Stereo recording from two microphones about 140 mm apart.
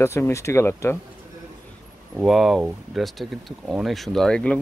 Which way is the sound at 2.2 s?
Centre (ahead or behind).